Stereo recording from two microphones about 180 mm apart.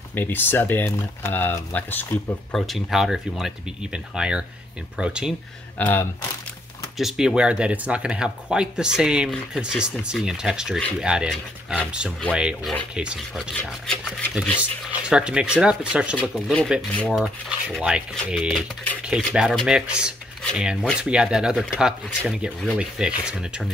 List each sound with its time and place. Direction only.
0.1 s speech: 10° left (ahead or behind); by 5.3 s 5° right (ahead or behind)
5.8 s speech: 10° left (ahead or behind)
7.0 s speech: centre (ahead or behind)
14.6 s speech: 5° right (ahead or behind)
16.2 s speech: 5° left (ahead or behind)
17.2 s speech: 5° right (ahead or behind)